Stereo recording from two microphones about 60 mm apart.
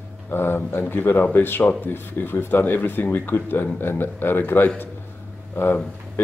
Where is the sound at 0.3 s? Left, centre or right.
Left.